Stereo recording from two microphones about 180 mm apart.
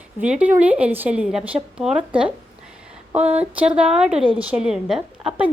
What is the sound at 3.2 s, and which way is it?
Speech, 35° right (ahead or behind).